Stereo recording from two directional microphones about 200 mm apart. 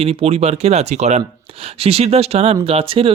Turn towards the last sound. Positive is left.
turn(degrees=-25)  # may be behind; listen again after turning